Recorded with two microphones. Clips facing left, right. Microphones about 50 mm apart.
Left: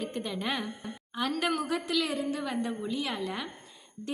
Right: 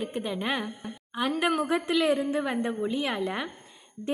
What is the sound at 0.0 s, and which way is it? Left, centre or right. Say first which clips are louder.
A woman's voice: right 3 dB; centre.